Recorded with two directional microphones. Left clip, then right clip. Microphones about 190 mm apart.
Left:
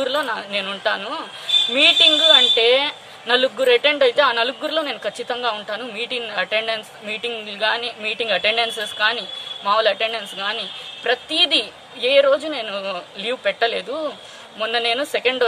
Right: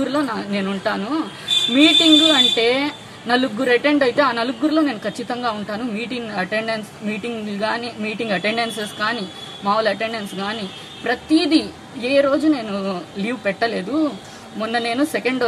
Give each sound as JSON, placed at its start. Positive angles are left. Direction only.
{"t": 0.0, "sound": "speech", "side_deg": 25}